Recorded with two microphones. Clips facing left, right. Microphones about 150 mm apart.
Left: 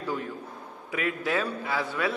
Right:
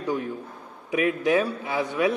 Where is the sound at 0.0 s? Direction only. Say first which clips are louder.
Right 4 dB; 20° right (ahead or behind).